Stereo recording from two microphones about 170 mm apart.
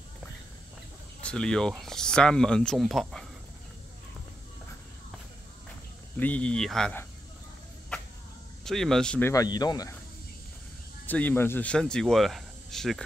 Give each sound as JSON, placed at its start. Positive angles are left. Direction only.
{"t": 1.2, "sound": "speech", "side_deg": 5}
{"t": 6.1, "sound": "speech", "side_deg": 10}
{"t": 8.6, "sound": "speech", "side_deg": 0}
{"t": 9.3, "sound": "speech", "side_deg": 20}
{"t": 11.1, "sound": "speech", "side_deg": 10}